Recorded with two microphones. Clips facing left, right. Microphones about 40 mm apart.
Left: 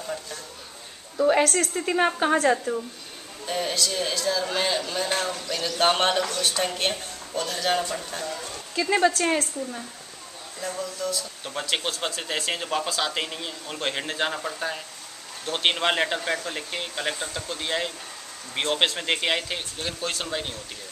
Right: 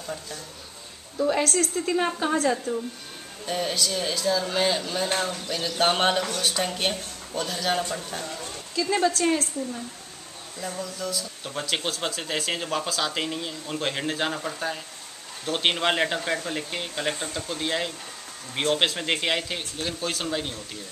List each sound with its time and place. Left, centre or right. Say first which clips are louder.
0.0 s a sound: left 2 dB; centre
1.1 s a woman's voice: left 3 dB; left
3.4 s speech: even; centre
10.7 s speech: left 2 dB; centre